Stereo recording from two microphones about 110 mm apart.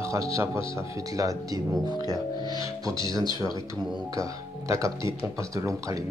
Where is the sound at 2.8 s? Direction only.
35° right (ahead or behind).